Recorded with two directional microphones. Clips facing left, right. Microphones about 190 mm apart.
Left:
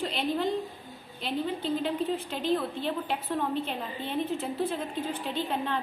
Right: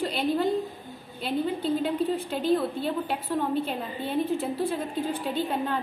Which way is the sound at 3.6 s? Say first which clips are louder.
Right 3 dB; 5° right (ahead or behind).